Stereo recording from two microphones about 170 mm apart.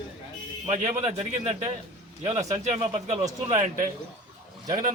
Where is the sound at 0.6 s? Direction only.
45° right (ahead or behind).